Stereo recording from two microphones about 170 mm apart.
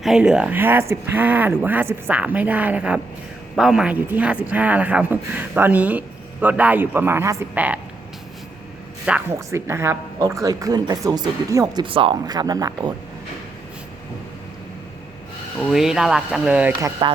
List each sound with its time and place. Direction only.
0.0 s speech: 5° right (ahead or behind)
9.0 s a woman's voice: 10° right (ahead or behind)
15.5 s speech: centre (ahead or behind)